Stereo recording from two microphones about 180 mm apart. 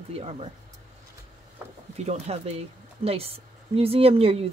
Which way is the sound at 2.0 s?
40° right (ahead or behind).